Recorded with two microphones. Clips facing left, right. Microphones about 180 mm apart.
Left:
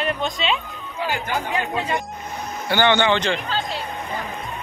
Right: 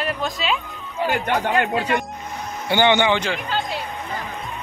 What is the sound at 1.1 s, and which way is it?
Speech, 70° right (ahead or behind).